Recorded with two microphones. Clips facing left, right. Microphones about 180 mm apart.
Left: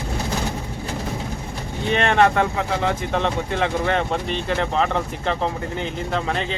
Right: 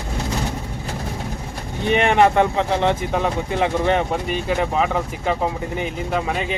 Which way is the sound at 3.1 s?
10° right (ahead or behind).